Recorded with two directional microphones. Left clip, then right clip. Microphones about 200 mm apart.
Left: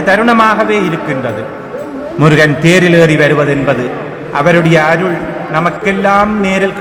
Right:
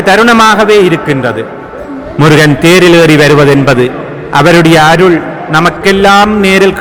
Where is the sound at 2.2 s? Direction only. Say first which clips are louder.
Right 4 dB; 30° right (ahead or behind).